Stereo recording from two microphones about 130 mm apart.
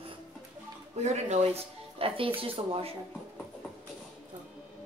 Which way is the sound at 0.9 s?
60° right (ahead or behind).